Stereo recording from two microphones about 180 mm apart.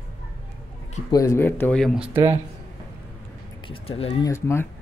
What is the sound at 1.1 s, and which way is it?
Speech, 15° left (ahead or behind).